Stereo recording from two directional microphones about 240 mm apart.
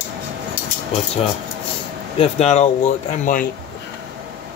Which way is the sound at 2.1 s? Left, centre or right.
Left.